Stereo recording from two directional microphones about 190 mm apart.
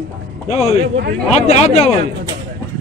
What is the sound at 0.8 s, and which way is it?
Speech, 60° right (ahead or behind).